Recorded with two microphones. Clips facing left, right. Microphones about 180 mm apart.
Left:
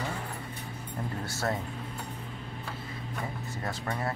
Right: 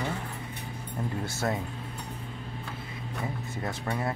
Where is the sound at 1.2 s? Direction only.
20° right (ahead or behind).